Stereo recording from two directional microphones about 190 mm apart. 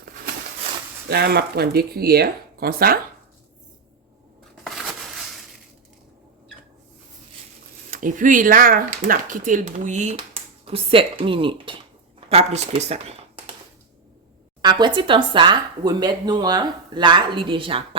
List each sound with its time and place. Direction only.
1.1 s speech: 55° right (ahead or behind)
4.6 s crushing: centre (ahead or behind)
7.9 s speech: 45° right (ahead or behind)
14.6 s speech: 25° right (ahead or behind)